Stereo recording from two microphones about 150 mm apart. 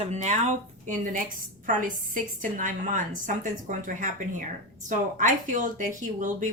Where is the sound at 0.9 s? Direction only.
60° right (ahead or behind).